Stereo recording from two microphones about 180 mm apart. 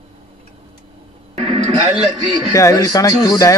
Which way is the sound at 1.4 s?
35° right (ahead or behind).